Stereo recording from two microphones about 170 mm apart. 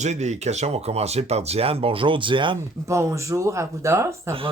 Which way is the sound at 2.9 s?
15° right (ahead or behind).